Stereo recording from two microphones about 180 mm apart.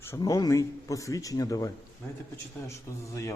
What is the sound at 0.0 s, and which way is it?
A man's voice, 15° left (ahead or behind).